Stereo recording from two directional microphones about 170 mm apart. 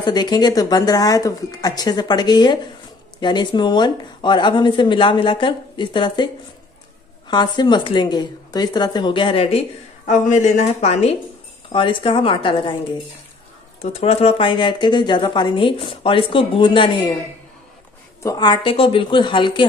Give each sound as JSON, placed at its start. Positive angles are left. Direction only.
{"t": 0.0, "sound": "a woman's voice", "side_deg": 25}
{"t": 10.0, "sound": "a woman's voice", "side_deg": 45}
{"t": 18.2, "sound": "a woman's voice", "side_deg": 25}